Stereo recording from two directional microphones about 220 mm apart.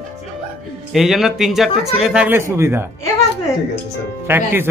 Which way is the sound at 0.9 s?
Centre (ahead or behind).